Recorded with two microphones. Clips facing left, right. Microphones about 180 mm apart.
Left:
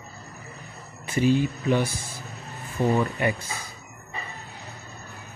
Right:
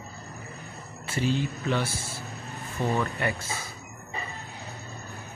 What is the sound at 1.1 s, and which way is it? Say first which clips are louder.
Speech: left 6 dB; 15° left (ahead or behind).